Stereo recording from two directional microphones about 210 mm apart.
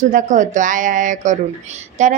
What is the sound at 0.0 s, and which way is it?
A woman's voice, 40° right (ahead or behind).